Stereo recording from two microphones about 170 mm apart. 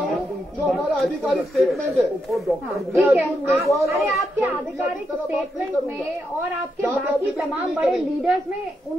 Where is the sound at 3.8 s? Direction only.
15° right (ahead or behind).